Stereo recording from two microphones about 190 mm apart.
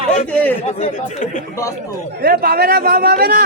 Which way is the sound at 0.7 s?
40° left (ahead or behind).